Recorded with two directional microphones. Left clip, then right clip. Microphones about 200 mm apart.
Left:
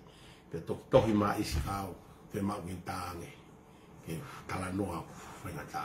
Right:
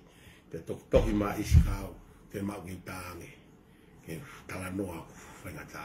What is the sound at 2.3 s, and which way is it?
Speech, centre (ahead or behind).